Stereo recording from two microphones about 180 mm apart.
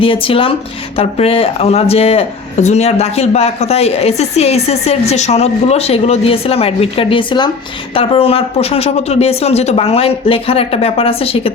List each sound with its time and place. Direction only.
0.0 s speech: 30° left (ahead or behind)